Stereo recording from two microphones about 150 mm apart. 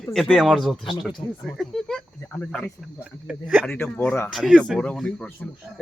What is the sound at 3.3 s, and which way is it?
Speech, 5° right (ahead or behind).